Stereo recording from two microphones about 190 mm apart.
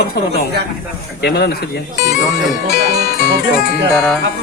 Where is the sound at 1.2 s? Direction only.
60° left (ahead or behind).